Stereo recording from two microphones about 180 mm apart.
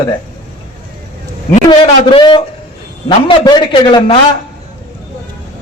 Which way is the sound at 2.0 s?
25° left (ahead or behind).